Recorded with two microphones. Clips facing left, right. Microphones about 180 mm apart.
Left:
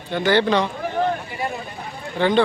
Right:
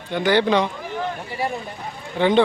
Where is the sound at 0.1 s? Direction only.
15° right (ahead or behind).